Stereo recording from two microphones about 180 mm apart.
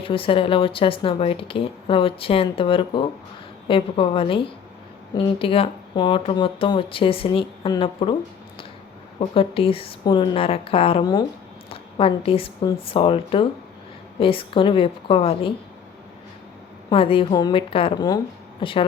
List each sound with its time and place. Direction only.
0.0 s speech: 30° left (ahead or behind)
9.1 s a woman's voice: 30° left (ahead or behind)
16.9 s speech: 30° left (ahead or behind)